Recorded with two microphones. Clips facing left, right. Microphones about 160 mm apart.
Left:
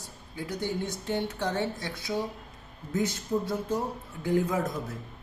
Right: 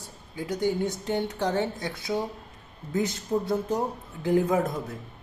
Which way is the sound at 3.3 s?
30° right (ahead or behind).